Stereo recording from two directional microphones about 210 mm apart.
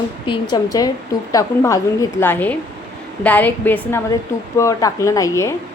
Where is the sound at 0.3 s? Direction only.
20° left (ahead or behind).